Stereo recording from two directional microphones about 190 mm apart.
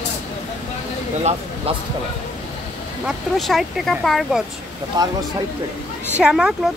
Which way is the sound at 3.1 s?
Centre (ahead or behind).